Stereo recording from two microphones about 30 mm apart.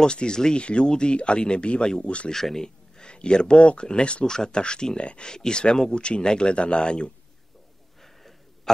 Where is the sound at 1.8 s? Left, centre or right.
Left.